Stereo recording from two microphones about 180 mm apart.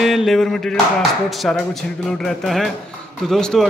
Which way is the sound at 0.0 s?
Centre (ahead or behind).